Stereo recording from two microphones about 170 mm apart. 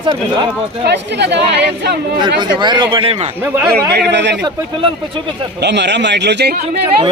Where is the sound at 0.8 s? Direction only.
90° right.